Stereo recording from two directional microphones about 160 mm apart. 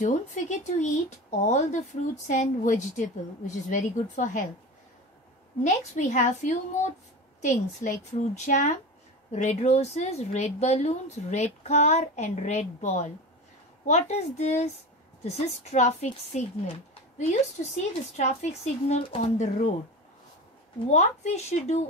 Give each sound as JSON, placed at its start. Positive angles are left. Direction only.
{"t": 0.0, "sound": "speech", "side_deg": 50}
{"t": 5.6, "sound": "speech", "side_deg": 50}
{"t": 20.9, "sound": "speech", "side_deg": 45}